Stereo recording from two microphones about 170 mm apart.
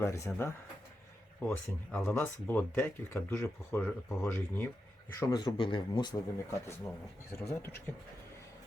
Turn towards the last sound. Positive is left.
turn(degrees=15)  # may be behind; listen again after turning